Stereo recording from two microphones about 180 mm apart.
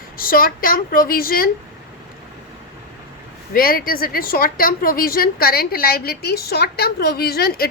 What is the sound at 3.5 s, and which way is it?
A woman's voice, 55° left (ahead or behind).